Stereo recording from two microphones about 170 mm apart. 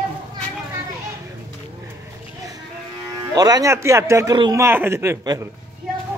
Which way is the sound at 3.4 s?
20° right (ahead or behind).